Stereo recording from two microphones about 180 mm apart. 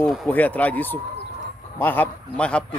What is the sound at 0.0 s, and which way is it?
Speech, centre (ahead or behind).